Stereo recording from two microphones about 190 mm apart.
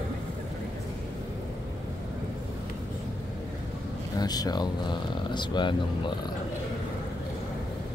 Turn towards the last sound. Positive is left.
turn(degrees=25)  # may be behind; listen again after turning